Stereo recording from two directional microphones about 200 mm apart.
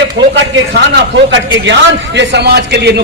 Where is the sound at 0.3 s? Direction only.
65° right (ahead or behind).